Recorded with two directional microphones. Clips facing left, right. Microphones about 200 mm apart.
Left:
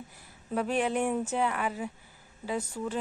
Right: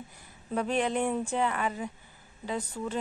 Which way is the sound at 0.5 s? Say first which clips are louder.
Even; 5° left (ahead or behind).